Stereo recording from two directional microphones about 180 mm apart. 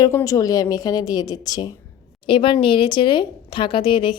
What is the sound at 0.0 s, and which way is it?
A woman's voice, 15° left (ahead or behind).